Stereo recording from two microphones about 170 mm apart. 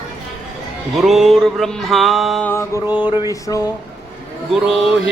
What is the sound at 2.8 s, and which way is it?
Music, 10° right (ahead or behind).